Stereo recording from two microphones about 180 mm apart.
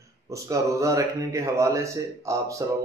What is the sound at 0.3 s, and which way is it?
Speech, 15° right (ahead or behind).